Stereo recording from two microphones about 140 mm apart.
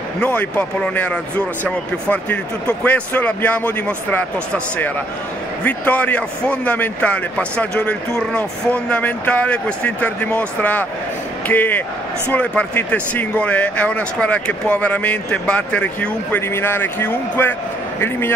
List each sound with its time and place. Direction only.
0.2 s a man's voice: 10° left (ahead or behind)
5.6 s a man's voice: 10° left (ahead or behind)